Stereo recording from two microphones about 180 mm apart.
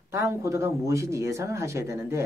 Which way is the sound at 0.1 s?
15° right (ahead or behind).